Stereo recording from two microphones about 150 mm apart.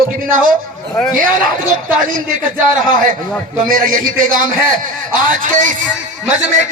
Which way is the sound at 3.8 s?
65° right (ahead or behind).